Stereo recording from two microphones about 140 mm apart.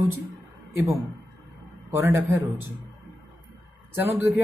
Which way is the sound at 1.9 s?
15° right (ahead or behind).